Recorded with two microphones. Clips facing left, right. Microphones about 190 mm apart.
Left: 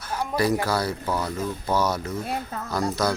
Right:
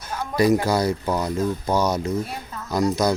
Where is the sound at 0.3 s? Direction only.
15° right (ahead or behind).